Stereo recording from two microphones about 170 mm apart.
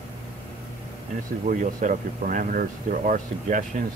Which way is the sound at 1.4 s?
50° right (ahead or behind).